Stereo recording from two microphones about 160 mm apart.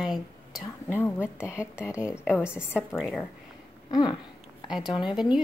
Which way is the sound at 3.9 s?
25° left (ahead or behind).